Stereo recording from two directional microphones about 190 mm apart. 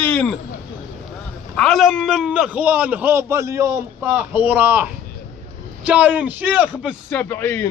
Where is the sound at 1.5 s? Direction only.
Centre (ahead or behind).